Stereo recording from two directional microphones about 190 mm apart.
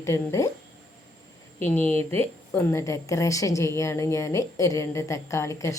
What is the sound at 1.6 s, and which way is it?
A woman's voice, 10° left (ahead or behind).